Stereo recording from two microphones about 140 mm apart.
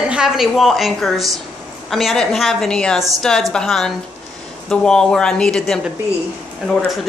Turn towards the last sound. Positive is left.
turn(degrees=0)  # may be behind; listen again after turning